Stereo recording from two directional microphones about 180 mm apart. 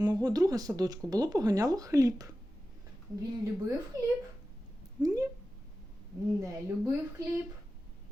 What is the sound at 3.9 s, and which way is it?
Speech, 15° right (ahead or behind).